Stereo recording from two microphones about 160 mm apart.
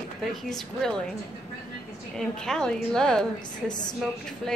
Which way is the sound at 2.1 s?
5° left (ahead or behind).